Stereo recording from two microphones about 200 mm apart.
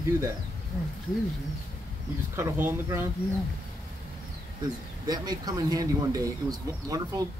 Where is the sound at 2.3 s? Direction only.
10° right (ahead or behind).